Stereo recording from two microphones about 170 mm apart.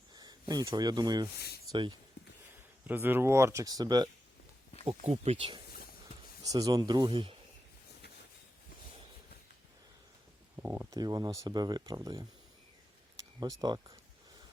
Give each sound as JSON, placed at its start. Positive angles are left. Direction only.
{"t": 0.1, "sound": "speech", "side_deg": -25}
{"t": 2.8, "sound": "speech", "side_deg": -10}
{"t": 4.9, "sound": "speech", "side_deg": -35}
{"t": 6.4, "sound": "speech", "side_deg": -20}
{"t": 10.6, "sound": "speech", "side_deg": -15}
{"t": 13.6, "sound": "speech", "side_deg": -20}